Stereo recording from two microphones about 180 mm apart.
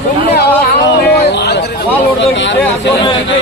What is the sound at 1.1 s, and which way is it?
Speech, 65° left (ahead or behind).